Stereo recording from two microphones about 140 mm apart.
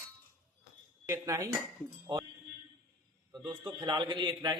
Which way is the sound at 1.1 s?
20° right (ahead or behind).